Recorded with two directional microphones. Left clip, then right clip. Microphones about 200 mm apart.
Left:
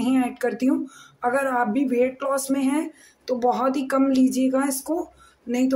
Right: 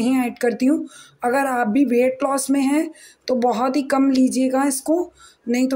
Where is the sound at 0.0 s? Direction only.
20° right (ahead or behind).